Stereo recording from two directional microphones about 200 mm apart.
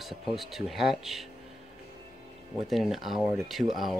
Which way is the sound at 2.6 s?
Centre (ahead or behind).